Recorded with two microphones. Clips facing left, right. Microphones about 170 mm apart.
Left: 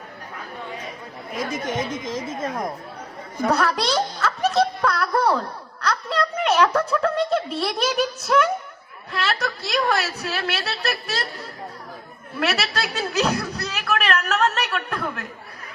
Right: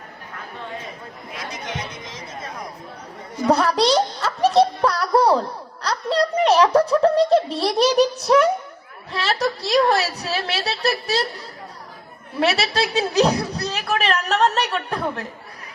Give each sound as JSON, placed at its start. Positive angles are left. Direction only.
{"t": 1.3, "sound": "speech", "side_deg": 50}
{"t": 3.5, "sound": "a sound", "side_deg": -30}
{"t": 6.9, "sound": "a woman's voice", "side_deg": -35}
{"t": 9.1, "sound": "a woman's voice", "side_deg": -30}
{"t": 12.4, "sound": "a woman's voice", "side_deg": -30}